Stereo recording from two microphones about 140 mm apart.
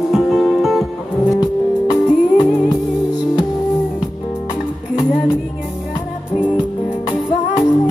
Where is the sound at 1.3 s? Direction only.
25° left (ahead or behind).